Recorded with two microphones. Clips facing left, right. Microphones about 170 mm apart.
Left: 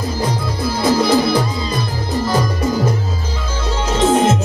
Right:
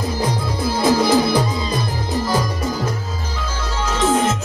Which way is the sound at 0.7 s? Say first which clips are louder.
Left 1 dB; 15° right (ahead or behind).